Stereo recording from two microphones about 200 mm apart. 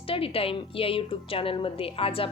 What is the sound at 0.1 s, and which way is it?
A woman's voice, 30° left (ahead or behind).